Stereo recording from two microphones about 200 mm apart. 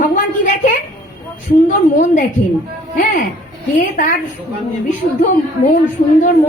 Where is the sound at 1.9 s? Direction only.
40° left (ahead or behind).